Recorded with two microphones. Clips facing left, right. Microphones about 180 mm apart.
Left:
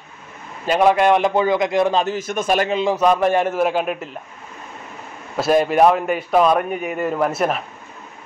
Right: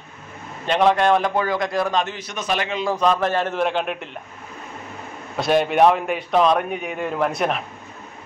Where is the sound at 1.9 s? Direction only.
40° left (ahead or behind).